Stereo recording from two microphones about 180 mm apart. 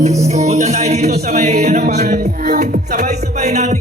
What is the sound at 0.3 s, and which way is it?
Music, 40° right (ahead or behind).